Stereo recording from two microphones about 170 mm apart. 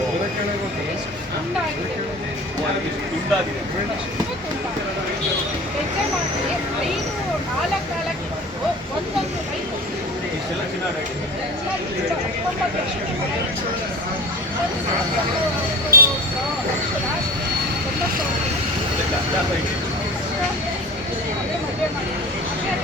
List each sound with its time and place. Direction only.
15.9 s vehicle: 60° right (ahead or behind)